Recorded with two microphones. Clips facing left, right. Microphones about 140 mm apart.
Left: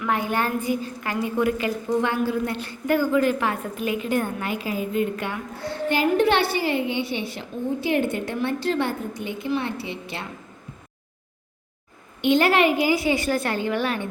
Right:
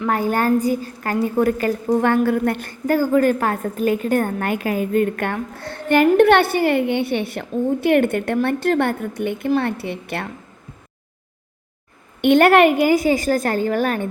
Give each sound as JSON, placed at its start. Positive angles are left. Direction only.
{"t": 0.0, "sound": "a woman's voice", "side_deg": -40}
{"t": 12.2, "sound": "a woman's voice", "side_deg": -60}